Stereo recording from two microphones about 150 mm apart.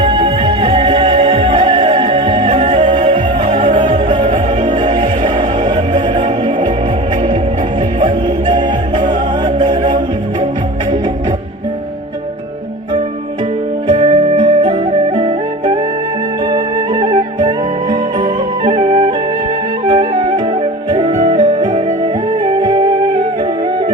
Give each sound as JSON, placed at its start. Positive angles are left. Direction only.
{"t": 0.0, "sound": "music", "side_deg": -35}
{"t": 9.6, "sound": "music", "side_deg": -30}
{"t": 13.9, "sound": "flute", "side_deg": -35}
{"t": 16.5, "sound": "music", "side_deg": -30}
{"t": 18.7, "sound": "flute", "side_deg": -40}
{"t": 19.8, "sound": "music", "side_deg": -35}
{"t": 20.9, "sound": "music", "side_deg": -50}
{"t": 22.4, "sound": "music", "side_deg": -30}